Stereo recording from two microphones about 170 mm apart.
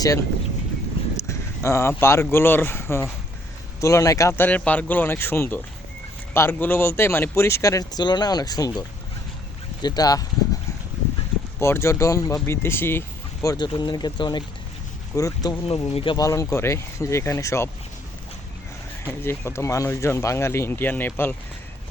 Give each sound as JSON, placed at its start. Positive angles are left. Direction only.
{"t": 1.1, "sound": "speech", "side_deg": 15}
{"t": 9.8, "sound": "speech", "side_deg": 25}
{"t": 11.6, "sound": "speech", "side_deg": 15}
{"t": 15.6, "sound": "speech", "side_deg": 35}
{"t": 16.1, "sound": "speech", "side_deg": 20}
{"t": 19.2, "sound": "speech", "side_deg": 15}